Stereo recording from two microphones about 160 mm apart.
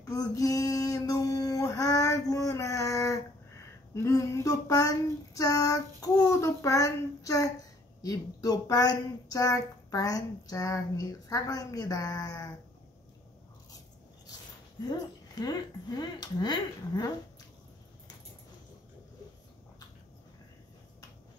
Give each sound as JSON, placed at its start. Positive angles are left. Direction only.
{"t": 0.0, "sound": "a sound", "side_deg": 20}
{"t": 3.9, "sound": "female singing", "side_deg": 20}
{"t": 8.0, "sound": "speech", "side_deg": 20}
{"t": 14.9, "sound": "speech", "side_deg": 25}